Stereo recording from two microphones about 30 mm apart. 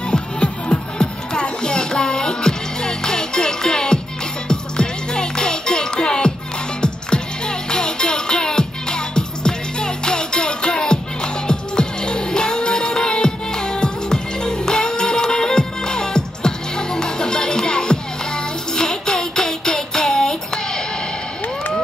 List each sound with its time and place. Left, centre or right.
0.1 s music: left